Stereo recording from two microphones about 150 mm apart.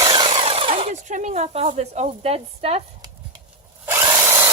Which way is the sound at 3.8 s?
15° right (ahead or behind).